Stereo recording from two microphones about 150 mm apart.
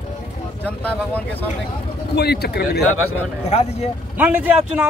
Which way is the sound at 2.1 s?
90° left.